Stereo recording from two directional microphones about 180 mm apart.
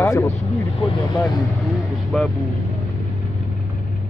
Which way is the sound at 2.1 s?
5° left (ahead or behind).